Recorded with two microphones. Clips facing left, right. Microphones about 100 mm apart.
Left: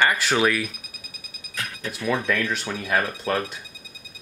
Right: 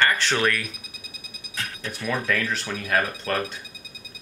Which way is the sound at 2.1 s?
5° left (ahead or behind).